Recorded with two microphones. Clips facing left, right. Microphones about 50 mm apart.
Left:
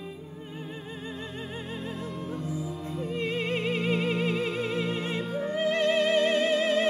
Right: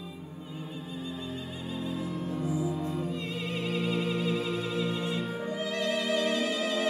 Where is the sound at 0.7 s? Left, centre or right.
Left.